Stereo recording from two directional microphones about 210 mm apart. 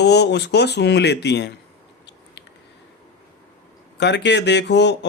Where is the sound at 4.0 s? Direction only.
55° left (ahead or behind).